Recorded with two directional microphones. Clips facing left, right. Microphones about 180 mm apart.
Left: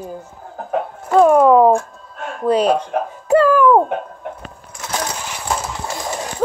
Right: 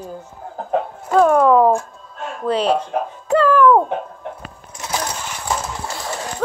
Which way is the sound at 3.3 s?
10° left (ahead or behind).